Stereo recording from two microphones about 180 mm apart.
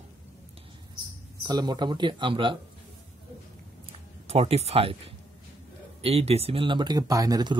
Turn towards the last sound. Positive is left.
turn(degrees=-20)  # may be behind; listen again after turning